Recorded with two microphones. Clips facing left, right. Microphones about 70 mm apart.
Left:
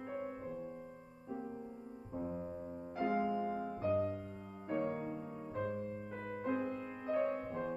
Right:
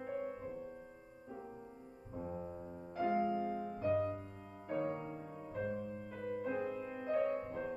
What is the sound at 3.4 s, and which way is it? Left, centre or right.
Music, left.